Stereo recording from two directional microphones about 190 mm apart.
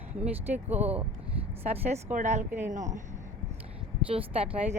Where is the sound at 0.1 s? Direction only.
10° right (ahead or behind).